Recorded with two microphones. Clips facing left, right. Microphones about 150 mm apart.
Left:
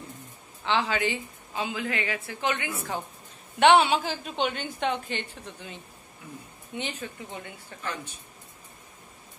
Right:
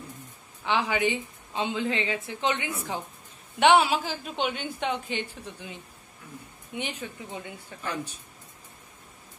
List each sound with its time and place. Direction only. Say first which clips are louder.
0.7 s a woman's voice: right 1 dB; 15° right (ahead or behind)
3.5 s a woman's voice: left 1 dB; 5° right (ahead or behind)